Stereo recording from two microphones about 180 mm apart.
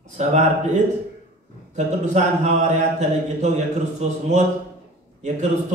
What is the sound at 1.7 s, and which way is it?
Speech, 40° right (ahead or behind).